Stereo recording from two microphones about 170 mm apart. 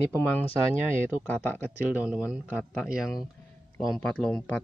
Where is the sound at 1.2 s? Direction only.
10° left (ahead or behind).